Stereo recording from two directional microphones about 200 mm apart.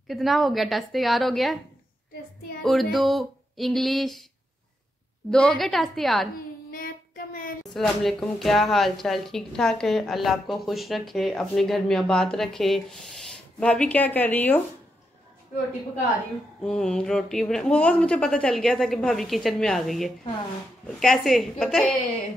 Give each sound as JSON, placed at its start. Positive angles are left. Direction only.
{"t": 0.1, "sound": "a woman's voice", "side_deg": 0}
{"t": 2.6, "sound": "a woman's voice", "side_deg": 0}
{"t": 5.3, "sound": "a woman's voice", "side_deg": 5}
{"t": 6.7, "sound": "child singing", "side_deg": 45}
{"t": 7.7, "sound": "a woman's voice", "side_deg": 0}
{"t": 16.6, "sound": "a woman's voice", "side_deg": 5}